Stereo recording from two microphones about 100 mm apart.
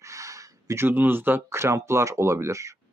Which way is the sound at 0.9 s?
20° right (ahead or behind).